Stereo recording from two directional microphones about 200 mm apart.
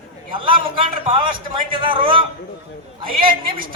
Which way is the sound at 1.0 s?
25° right (ahead or behind).